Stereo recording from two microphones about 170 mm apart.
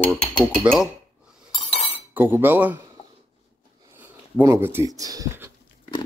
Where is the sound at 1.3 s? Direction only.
5° right (ahead or behind).